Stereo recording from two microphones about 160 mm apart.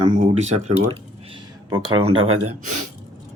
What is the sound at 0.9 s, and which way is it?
Speech, 30° right (ahead or behind).